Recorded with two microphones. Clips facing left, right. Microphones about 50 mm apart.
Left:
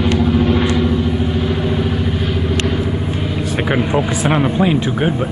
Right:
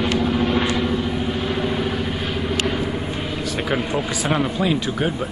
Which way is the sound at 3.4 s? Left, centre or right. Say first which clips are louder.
Left 5 dB; left.